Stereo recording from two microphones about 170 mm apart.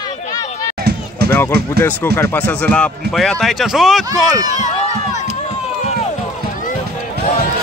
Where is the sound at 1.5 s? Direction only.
70° right (ahead or behind).